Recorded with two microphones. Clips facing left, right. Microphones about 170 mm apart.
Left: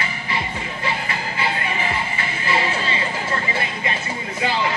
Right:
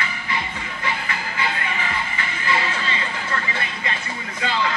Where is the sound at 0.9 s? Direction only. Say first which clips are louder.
Left 1 dB; 25° left (ahead or behind).